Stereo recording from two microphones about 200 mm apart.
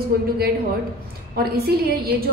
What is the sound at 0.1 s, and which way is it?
Speech, 50° right (ahead or behind).